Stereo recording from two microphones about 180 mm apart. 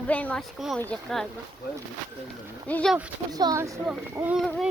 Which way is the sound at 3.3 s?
20° right (ahead or behind).